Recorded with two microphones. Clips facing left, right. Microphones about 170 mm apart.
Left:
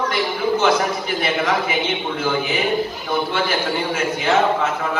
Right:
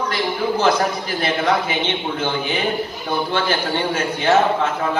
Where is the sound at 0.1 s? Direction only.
35° right (ahead or behind).